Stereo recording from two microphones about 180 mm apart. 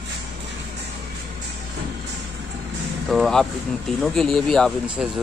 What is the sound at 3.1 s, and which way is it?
Speech, centre (ahead or behind).